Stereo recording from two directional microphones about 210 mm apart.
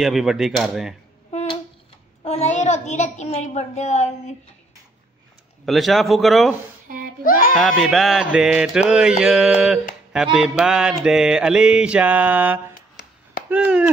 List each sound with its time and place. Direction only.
0.0 s mantra: centre (ahead or behind)
1.3 s a sound: 30° left (ahead or behind)
2.2 s a child's voice: 30° left (ahead or behind)
5.7 s mantra: centre (ahead or behind)
6.9 s screaming: 40° right (ahead or behind)
7.2 s speech: 40° left (ahead or behind)
7.5 s mantra: centre (ahead or behind)
13.0 s chop: 50° left (ahead or behind)
13.5 s speech: 5° right (ahead or behind)